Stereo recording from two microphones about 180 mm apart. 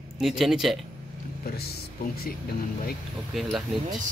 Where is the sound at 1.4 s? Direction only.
60° left (ahead or behind).